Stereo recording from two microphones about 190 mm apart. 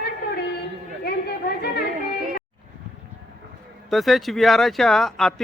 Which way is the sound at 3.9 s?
Centre (ahead or behind).